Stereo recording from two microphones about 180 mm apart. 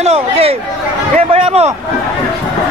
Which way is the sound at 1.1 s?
35° right (ahead or behind).